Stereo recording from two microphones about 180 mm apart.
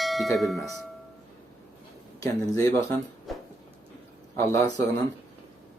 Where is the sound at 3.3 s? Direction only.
Centre (ahead or behind).